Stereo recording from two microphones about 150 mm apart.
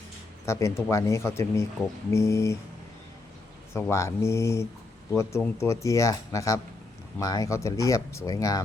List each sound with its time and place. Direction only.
0.4 s speech: 20° left (ahead or behind)
3.8 s speech: 15° left (ahead or behind)